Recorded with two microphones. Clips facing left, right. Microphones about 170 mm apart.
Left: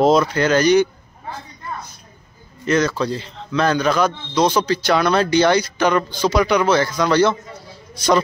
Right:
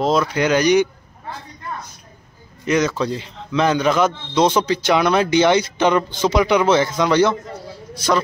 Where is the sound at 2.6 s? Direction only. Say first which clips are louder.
Even; 15° right (ahead or behind).